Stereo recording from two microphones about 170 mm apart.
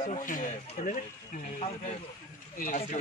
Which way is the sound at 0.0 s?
45° left (ahead or behind).